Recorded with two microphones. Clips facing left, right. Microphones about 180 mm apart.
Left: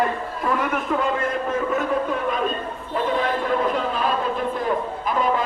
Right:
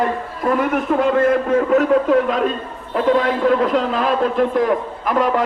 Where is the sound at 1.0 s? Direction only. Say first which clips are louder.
Right 8 dB; 70° right (ahead or behind); by 2.5 s 90° right.